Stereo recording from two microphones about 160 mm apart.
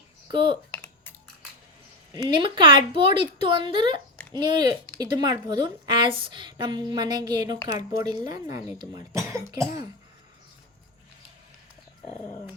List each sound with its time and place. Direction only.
0.3 s a woman's voice: 30° right (ahead or behind)
2.1 s a woman's voice: 30° right (ahead or behind)